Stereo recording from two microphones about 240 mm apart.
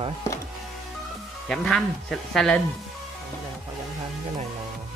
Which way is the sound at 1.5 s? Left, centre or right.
Centre.